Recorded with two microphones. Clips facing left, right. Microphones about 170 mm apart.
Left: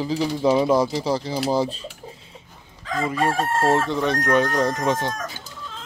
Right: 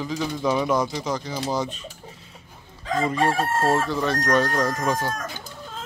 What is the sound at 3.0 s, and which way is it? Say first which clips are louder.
Crowing: even; 5° left (ahead or behind).